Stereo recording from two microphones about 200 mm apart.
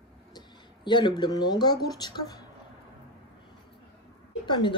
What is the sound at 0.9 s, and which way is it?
Speech, 25° left (ahead or behind).